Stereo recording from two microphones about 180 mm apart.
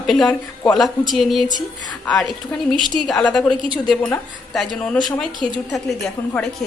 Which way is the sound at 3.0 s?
Centre (ahead or behind).